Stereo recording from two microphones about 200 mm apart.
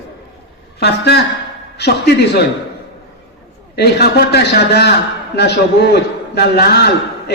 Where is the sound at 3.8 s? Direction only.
55° left (ahead or behind).